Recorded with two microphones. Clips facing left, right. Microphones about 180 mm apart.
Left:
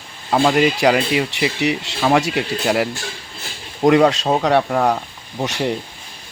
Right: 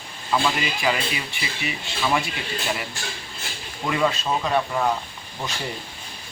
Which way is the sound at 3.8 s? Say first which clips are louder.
Left 10 dB; 75° left (ahead or behind).